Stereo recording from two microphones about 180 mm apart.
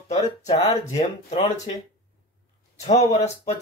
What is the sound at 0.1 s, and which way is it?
Speech, 30° left (ahead or behind).